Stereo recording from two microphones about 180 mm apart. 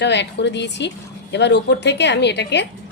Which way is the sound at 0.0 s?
75° left (ahead or behind).